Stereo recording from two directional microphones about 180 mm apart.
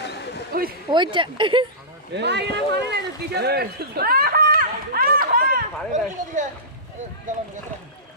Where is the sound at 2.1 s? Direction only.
70° right (ahead or behind); by 6.4 s 50° right (ahead or behind).